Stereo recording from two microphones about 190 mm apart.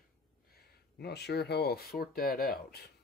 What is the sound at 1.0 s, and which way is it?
Speech, 60° left (ahead or behind).